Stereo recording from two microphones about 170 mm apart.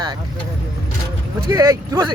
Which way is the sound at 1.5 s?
20° right (ahead or behind).